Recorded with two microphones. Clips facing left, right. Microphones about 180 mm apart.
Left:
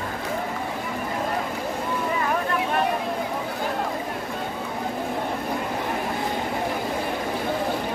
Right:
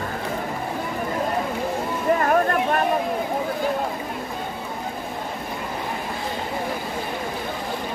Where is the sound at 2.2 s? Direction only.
50° right (ahead or behind).